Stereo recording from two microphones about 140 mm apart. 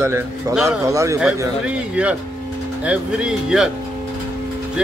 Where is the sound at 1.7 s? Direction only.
10° right (ahead or behind).